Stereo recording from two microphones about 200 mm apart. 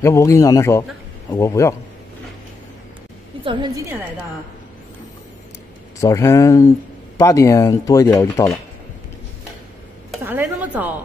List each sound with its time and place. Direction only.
0.0 s speech: 15° left (ahead or behind)
3.4 s a woman's voice: 20° right (ahead or behind)
5.9 s speech: 15° left (ahead or behind)
10.2 s a sound: 10° right (ahead or behind)